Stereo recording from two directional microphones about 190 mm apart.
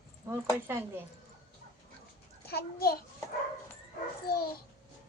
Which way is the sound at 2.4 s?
55° left (ahead or behind).